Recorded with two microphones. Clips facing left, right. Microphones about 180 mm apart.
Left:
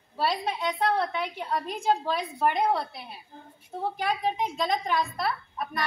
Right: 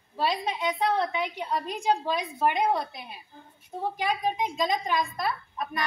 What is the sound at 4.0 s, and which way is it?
A woman's voice, 15° right (ahead or behind).